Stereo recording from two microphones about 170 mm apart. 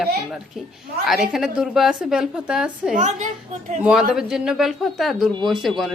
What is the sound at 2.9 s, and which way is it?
Speech, 45° right (ahead or behind).